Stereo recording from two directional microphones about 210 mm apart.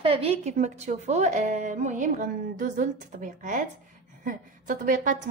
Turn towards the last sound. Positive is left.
turn(degrees=-40)  # may be behind; listen again after turning